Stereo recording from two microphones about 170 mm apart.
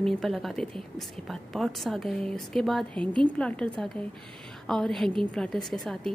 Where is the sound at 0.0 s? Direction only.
Centre (ahead or behind).